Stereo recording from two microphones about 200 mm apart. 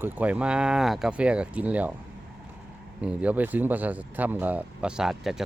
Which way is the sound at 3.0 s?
10° right (ahead or behind).